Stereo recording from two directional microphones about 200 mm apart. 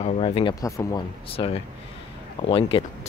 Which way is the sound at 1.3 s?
30° left (ahead or behind).